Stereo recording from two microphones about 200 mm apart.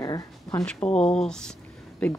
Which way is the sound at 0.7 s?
5° left (ahead or behind).